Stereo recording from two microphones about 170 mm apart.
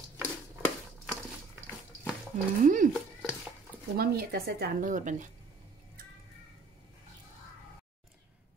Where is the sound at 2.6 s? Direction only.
50° right (ahead or behind).